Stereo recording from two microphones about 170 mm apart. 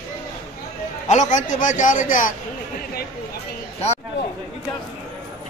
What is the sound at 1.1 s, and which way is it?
A man's voice, 45° left (ahead or behind).